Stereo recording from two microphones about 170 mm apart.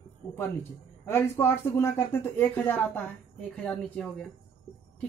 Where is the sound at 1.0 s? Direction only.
15° left (ahead or behind).